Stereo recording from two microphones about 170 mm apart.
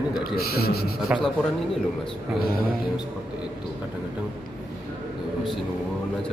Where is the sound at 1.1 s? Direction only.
10° right (ahead or behind).